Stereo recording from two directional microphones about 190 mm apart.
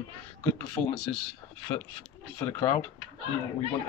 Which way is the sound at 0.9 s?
Centre (ahead or behind).